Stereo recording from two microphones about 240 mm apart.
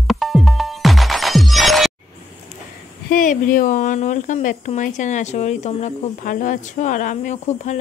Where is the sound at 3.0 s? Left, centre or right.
Left.